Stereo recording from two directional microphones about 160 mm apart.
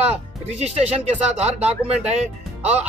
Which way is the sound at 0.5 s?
40° right (ahead or behind).